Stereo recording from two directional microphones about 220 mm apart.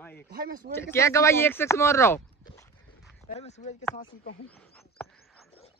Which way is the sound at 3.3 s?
30° left (ahead or behind).